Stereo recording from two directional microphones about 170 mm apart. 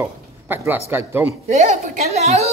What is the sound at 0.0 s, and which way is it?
Speech, 15° right (ahead or behind).